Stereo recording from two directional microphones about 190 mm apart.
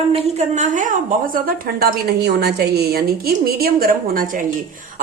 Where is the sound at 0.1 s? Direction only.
35° right (ahead or behind).